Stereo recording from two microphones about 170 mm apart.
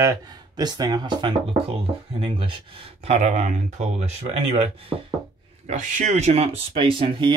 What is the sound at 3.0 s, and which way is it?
Speech, 40° right (ahead or behind).